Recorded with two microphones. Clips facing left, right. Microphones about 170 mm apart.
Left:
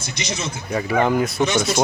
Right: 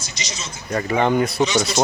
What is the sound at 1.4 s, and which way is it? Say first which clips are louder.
Speech: even; 55° left (ahead or behind).